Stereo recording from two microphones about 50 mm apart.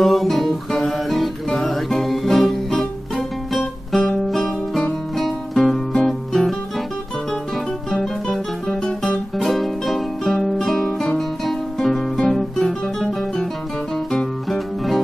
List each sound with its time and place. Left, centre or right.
0.0 s music: centre
7.9 s music: centre